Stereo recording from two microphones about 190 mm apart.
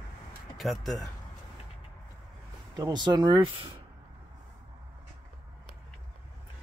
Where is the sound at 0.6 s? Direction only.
Centre (ahead or behind).